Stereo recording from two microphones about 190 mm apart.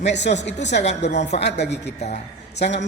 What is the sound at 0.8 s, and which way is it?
Speech, 35° left (ahead or behind).